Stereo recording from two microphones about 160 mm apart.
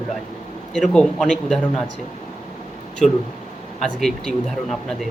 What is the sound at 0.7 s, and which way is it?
Speech, centre (ahead or behind).